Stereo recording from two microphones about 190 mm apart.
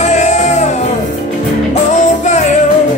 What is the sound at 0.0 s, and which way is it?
Music, 40° left (ahead or behind).